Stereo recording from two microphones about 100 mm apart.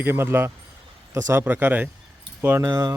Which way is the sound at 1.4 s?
20° right (ahead or behind).